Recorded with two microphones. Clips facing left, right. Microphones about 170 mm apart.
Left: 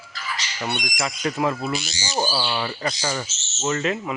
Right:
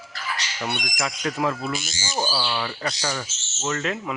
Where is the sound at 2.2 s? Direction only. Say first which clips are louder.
Left 2 dB; 10° left (ahead or behind).